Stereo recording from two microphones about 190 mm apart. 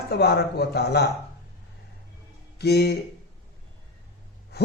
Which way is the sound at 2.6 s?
60° left (ahead or behind).